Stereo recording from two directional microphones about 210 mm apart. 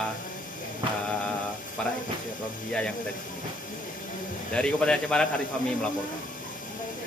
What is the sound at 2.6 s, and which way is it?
Speech, 5° left (ahead or behind).